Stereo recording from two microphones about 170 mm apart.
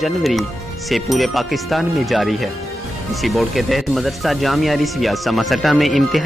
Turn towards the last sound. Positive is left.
turn(degrees=0)  # may be behind; listen again after turning